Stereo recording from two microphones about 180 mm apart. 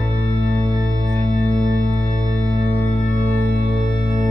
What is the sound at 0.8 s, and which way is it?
Music, 40° right (ahead or behind).